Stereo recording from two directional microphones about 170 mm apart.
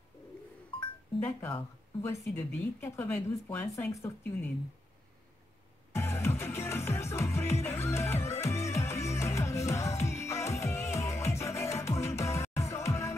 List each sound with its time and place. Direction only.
1.2 s speech: 15° left (ahead or behind)
5.9 s music: 15° left (ahead or behind)